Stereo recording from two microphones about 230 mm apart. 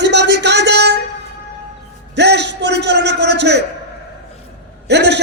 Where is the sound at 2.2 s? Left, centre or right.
Right.